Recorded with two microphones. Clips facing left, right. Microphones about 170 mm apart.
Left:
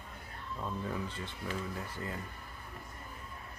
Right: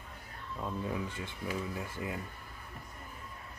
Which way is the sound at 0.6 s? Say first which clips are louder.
Right 2 dB; 10° right (ahead or behind).